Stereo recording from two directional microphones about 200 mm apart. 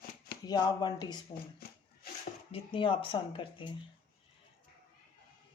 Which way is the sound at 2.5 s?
25° left (ahead or behind).